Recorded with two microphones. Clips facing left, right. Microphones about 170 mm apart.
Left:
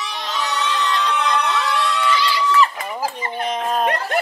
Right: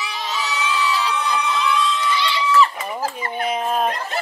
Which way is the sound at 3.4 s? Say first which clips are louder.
Even; 5° right (ahead or behind).